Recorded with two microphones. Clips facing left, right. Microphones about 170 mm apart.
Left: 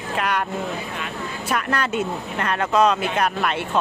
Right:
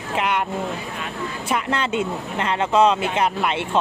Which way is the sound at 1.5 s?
25° right (ahead or behind).